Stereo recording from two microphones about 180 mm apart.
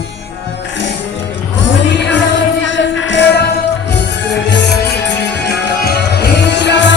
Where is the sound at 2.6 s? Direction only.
90° left; by 3.5 s 70° left (ahead or behind).